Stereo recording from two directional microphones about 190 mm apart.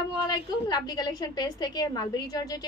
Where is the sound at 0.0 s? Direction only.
20° left (ahead or behind).